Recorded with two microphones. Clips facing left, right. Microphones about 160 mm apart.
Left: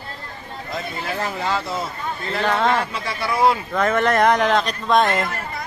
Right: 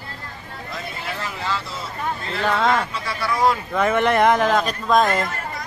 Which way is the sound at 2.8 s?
35° left (ahead or behind).